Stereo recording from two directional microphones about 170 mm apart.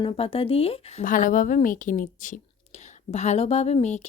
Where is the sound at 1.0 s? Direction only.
50° left (ahead or behind).